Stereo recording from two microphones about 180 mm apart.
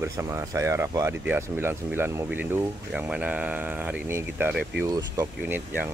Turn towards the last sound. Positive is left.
turn(degrees=-10)  # may be behind; listen again after turning